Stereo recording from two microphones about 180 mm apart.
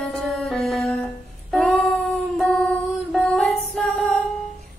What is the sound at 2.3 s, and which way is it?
Music, 5° left (ahead or behind).